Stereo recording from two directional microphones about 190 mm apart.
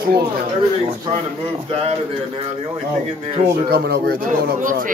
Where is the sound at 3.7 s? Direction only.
60° right (ahead or behind).